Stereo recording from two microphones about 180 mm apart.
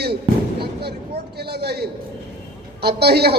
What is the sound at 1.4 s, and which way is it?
A man's voice, 65° right (ahead or behind).